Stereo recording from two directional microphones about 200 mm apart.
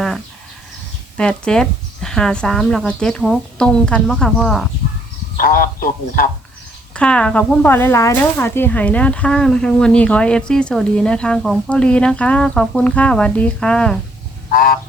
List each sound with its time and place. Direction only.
1.1 s speech: 5° left (ahead or behind)
5.4 s a man's voice: 45° left (ahead or behind)
6.9 s speech: 5° left (ahead or behind)
14.5 s a man's voice: 45° left (ahead or behind)